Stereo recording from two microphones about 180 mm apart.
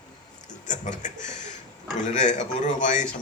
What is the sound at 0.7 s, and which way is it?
Speech, 40° left (ahead or behind).